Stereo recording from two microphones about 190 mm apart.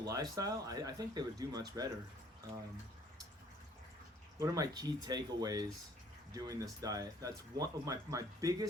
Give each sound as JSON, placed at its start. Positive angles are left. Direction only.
{"t": 0.0, "sound": "speech", "side_deg": -20}
{"t": 4.4, "sound": "speech", "side_deg": -20}